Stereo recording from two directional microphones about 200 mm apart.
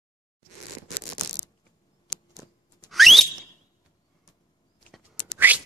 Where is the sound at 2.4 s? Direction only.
15° right (ahead or behind).